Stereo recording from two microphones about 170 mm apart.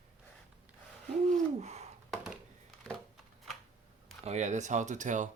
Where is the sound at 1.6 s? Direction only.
40° right (ahead or behind).